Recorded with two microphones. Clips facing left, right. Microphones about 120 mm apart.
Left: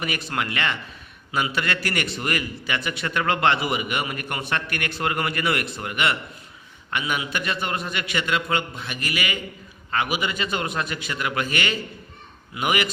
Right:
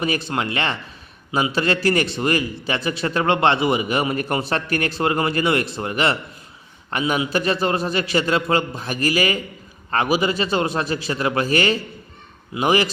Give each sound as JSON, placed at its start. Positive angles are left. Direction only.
{"t": 0.0, "sound": "a man's voice", "side_deg": -30}